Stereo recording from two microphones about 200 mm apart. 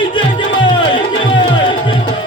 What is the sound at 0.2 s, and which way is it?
Music, 25° left (ahead or behind).